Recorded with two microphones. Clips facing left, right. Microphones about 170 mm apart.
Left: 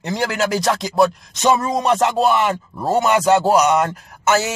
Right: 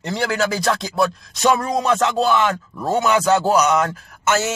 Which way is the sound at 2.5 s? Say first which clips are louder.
Left 2 dB; 30° left (ahead or behind).